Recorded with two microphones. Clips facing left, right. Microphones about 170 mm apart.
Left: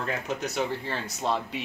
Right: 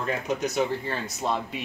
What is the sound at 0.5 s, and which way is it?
Speech, 10° right (ahead or behind).